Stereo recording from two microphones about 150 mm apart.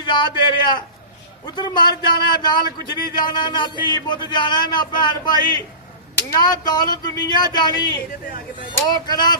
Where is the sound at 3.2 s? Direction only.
30° left (ahead or behind).